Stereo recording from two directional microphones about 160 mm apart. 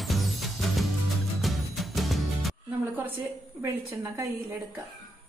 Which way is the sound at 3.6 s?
15° right (ahead or behind).